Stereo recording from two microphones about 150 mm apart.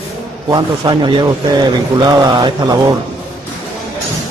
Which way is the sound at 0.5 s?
30° right (ahead or behind).